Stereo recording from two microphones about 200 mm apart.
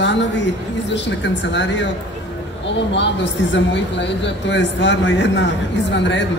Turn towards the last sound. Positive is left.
turn(degrees=65)  # may be behind; listen again after turning